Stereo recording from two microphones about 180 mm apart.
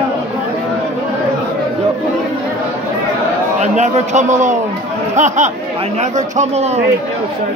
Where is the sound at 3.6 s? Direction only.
40° right (ahead or behind).